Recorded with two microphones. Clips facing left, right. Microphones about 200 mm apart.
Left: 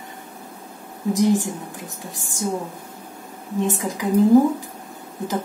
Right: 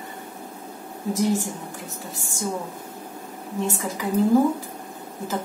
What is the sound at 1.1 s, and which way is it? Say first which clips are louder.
Speech: left 4 dB; 15° left (ahead or behind).